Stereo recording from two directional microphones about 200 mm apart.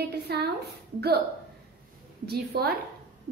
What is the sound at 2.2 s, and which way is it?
Speech, 50° right (ahead or behind).